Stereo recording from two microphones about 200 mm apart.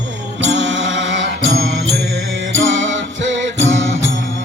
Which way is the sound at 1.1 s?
70° right (ahead or behind).